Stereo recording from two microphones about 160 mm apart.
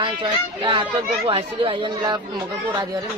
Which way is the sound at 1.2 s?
35° right (ahead or behind).